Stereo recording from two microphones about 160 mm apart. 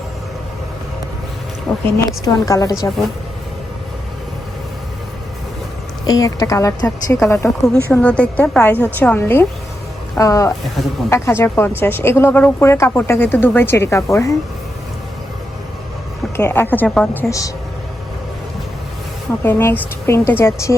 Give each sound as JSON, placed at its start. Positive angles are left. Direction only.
{"t": 1.7, "sound": "a woman's voice", "side_deg": 0}
{"t": 2.2, "sound": "a woman's voice", "side_deg": 20}
{"t": 6.1, "sound": "a woman's voice", "side_deg": 20}
{"t": 7.9, "sound": "a woman's voice", "side_deg": 5}
{"t": 16.4, "sound": "speech", "side_deg": 10}
{"t": 17.2, "sound": "a woman's voice", "side_deg": 20}
{"t": 19.4, "sound": "speech", "side_deg": 15}